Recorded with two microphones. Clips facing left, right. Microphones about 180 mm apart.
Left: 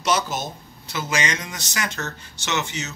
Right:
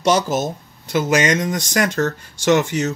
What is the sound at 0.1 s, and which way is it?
Speech, 45° right (ahead or behind).